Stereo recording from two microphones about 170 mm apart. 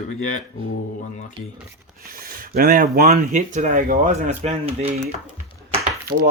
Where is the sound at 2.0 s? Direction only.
60° right (ahead or behind); by 4.9 s 40° right (ahead or behind).